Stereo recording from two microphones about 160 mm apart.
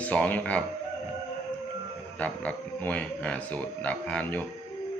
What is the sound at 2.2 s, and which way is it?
Speech, 10° left (ahead or behind).